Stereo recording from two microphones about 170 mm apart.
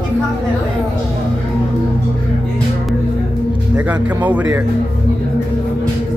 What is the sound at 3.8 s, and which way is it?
Speech, 10° right (ahead or behind).